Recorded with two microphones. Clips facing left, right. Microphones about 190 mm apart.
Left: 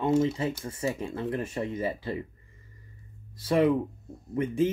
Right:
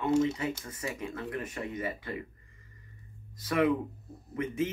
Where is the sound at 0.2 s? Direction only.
30° left (ahead or behind).